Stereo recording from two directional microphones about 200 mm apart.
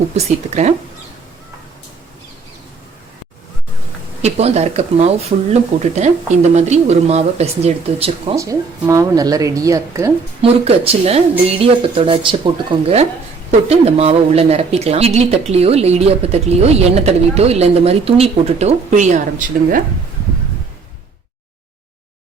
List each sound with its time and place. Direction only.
0.4 s speech: 35° right (ahead or behind)
4.2 s speech: 35° right (ahead or behind)
8.4 s speech: 15° right (ahead or behind)
10.4 s speech: 30° right (ahead or behind)
13.5 s speech: 30° right (ahead or behind)